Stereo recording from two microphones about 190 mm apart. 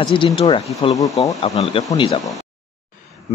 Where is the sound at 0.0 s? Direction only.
25° left (ahead or behind).